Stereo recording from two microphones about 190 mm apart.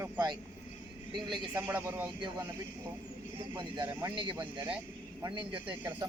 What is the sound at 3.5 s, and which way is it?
Speech, 25° right (ahead or behind).